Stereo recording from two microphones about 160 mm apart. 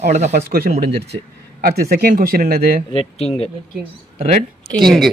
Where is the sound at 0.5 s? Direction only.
70° right (ahead or behind).